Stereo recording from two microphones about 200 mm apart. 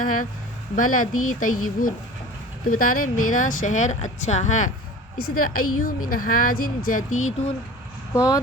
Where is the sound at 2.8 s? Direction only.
45° left (ahead or behind).